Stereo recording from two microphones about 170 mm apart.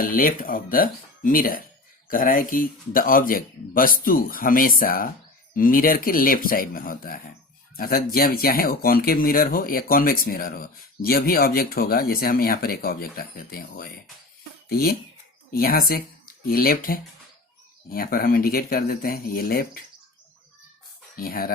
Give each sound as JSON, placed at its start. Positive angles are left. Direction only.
{"t": 0.0, "sound": "speech", "side_deg": 55}
{"t": 21.2, "sound": "speech", "side_deg": 60}